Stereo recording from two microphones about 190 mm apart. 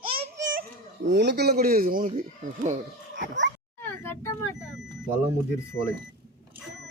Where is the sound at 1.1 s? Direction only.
65° right (ahead or behind); by 2.2 s 45° right (ahead or behind).